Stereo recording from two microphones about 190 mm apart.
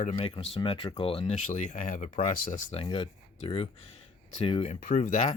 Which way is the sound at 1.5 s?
40° left (ahead or behind).